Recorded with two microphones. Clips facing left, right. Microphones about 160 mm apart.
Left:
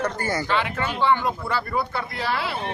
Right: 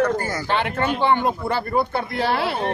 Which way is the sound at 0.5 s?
55° right (ahead or behind).